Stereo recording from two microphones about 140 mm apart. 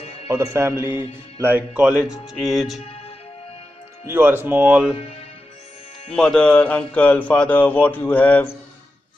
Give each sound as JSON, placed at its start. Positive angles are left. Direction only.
{"t": 0.0, "sound": "music", "side_deg": 45}
{"t": 0.3, "sound": "speech", "side_deg": -20}
{"t": 4.0, "sound": "speech", "side_deg": -15}
{"t": 6.1, "sound": "speech", "side_deg": 5}